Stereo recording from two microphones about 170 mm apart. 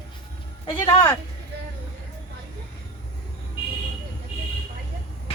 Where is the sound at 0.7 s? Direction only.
20° left (ahead or behind).